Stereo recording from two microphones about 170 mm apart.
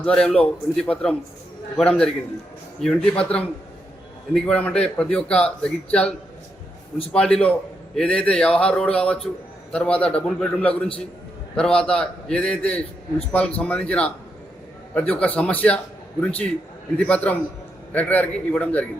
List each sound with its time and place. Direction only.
0.0 s a man's voice: 5° left (ahead or behind)